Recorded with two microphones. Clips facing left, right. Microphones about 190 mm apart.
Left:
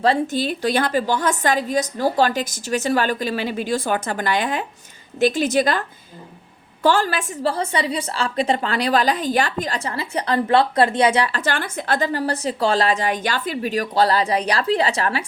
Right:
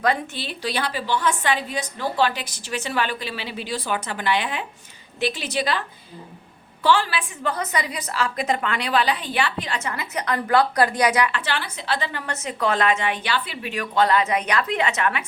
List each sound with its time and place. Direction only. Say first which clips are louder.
0.0 s a woman's voice: left 5 dB; 35° left (ahead or behind)
6.8 s a woman's voice: left 2 dB; 45° left (ahead or behind)
7.5 s a woman's voice: left 4 dB; 30° left (ahead or behind)